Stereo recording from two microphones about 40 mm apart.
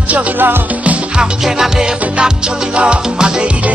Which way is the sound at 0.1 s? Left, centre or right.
Right.